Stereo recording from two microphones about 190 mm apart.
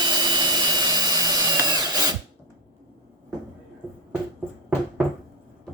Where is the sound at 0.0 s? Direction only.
25° right (ahead or behind).